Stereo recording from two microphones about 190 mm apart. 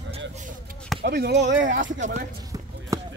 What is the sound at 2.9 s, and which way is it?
Basketball bounce, 20° right (ahead or behind).